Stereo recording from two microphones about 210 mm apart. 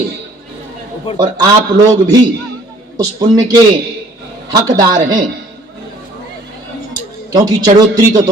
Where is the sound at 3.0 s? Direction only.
15° right (ahead or behind).